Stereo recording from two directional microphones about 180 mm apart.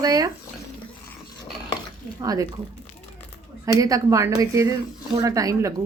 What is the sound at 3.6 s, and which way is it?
A woman's voice, 20° right (ahead or behind).